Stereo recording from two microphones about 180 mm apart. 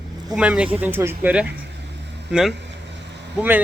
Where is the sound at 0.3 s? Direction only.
5° right (ahead or behind).